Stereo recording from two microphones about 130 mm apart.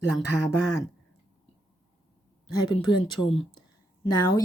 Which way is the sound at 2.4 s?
35° left (ahead or behind).